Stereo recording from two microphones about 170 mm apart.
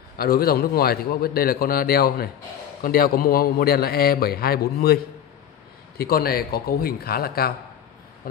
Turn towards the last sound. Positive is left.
turn(degrees=65)  # may be behind; listen again after turning